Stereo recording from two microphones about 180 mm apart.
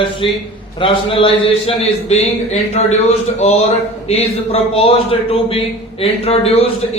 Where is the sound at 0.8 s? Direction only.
30° left (ahead or behind).